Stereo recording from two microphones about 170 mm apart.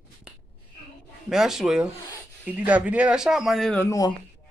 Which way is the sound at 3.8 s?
20° left (ahead or behind).